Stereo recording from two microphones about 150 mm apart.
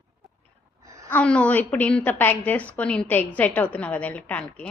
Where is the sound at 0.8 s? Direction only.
20° right (ahead or behind).